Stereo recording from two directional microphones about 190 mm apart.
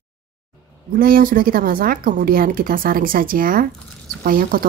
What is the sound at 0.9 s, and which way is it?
Speech, 50° right (ahead or behind).